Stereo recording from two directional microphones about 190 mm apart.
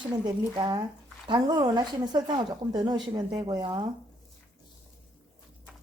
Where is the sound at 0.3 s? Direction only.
20° right (ahead or behind).